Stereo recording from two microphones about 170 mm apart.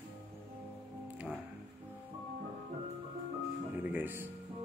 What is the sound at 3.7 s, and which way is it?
Music, 10° right (ahead or behind).